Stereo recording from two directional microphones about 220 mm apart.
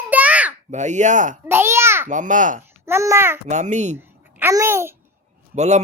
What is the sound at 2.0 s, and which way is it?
Speech, 35° right (ahead or behind).